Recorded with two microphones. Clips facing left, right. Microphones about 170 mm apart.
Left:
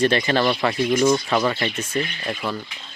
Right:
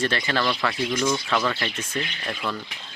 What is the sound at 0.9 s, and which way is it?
Speech, 35° left (ahead or behind).